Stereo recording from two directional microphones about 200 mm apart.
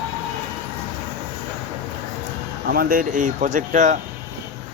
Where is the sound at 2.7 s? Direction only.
45° right (ahead or behind).